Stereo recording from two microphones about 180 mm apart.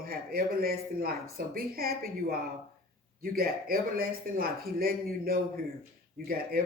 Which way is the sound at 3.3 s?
55° right (ahead or behind).